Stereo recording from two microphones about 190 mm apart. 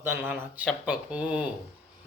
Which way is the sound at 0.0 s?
10° right (ahead or behind).